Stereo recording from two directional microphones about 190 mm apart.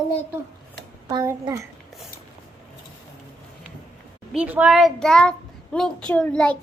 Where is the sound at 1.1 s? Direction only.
20° right (ahead or behind).